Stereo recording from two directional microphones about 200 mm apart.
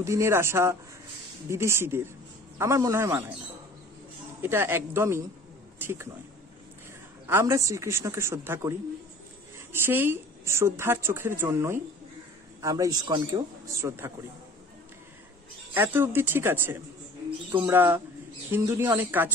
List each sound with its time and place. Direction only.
0.0 s a woman's voice: 15° right (ahead or behind)
4.4 s a woman's voice: 10° right (ahead or behind)
5.8 s a sound: 10° right (ahead or behind)
7.2 s a woman's voice: 15° right (ahead or behind)
15.7 s a woman's voice: 10° right (ahead or behind)